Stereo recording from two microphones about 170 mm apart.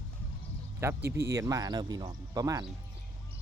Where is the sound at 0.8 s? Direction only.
15° right (ahead or behind).